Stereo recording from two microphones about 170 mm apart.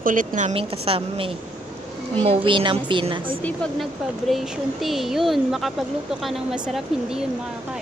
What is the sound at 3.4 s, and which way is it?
Speech, centre (ahead or behind).